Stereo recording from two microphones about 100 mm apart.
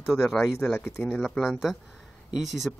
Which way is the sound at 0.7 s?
20° left (ahead or behind).